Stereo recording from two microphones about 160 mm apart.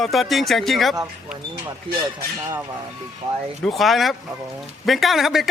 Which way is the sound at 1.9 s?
35° right (ahead or behind).